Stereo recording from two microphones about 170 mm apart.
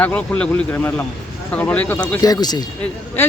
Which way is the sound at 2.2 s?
25° left (ahead or behind).